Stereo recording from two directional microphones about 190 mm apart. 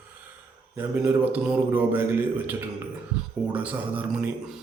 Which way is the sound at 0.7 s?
10° right (ahead or behind).